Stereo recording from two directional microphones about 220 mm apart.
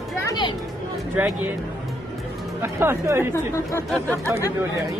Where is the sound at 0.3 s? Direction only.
20° left (ahead or behind).